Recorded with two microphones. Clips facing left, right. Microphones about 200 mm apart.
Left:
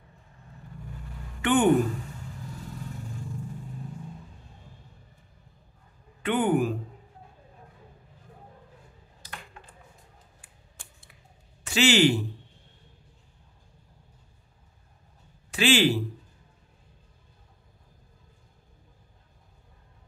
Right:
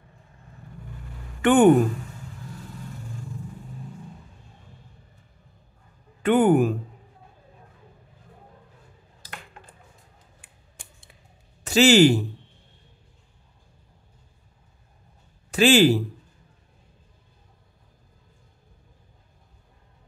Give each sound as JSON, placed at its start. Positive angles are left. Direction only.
{"t": 1.4, "sound": "speech", "side_deg": -50}
{"t": 6.2, "sound": "speech", "side_deg": -45}
{"t": 10.8, "sound": "scissors", "side_deg": -25}
{"t": 11.6, "sound": "speech", "side_deg": -40}
{"t": 15.5, "sound": "speech", "side_deg": -45}